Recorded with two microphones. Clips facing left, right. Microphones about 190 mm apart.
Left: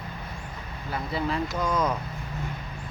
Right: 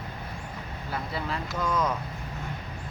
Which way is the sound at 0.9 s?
Centre (ahead or behind).